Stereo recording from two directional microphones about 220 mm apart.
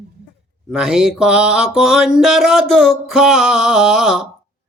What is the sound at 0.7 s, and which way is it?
Mantra, centre (ahead or behind).